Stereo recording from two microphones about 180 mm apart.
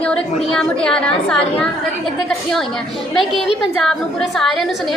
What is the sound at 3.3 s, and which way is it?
Speech, 30° right (ahead or behind).